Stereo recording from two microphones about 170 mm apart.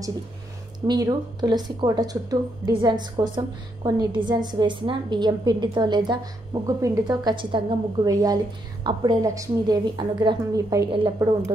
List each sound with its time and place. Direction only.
0.7 s speech: 25° right (ahead or behind)